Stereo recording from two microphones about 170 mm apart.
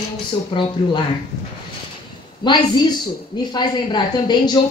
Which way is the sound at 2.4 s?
25° left (ahead or behind).